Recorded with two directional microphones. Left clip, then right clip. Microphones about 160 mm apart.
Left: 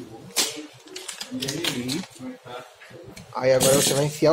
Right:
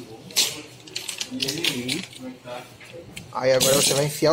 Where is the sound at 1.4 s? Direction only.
15° left (ahead or behind).